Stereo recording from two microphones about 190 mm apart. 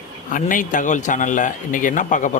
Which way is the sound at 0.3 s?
45° left (ahead or behind).